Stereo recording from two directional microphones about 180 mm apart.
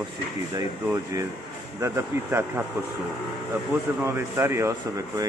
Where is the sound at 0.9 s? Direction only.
15° right (ahead or behind).